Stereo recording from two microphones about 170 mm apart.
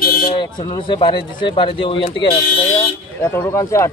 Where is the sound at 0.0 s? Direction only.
60° left (ahead or behind).